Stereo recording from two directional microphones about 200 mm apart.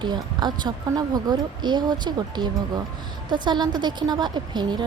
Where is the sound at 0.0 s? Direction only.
20° right (ahead or behind).